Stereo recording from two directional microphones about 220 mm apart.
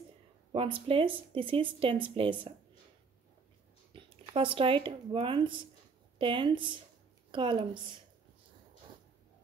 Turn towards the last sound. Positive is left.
turn(degrees=-20)  # may be behind; listen again after turning